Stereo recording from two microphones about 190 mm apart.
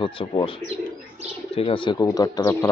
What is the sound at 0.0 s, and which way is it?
Speech, 25° left (ahead or behind).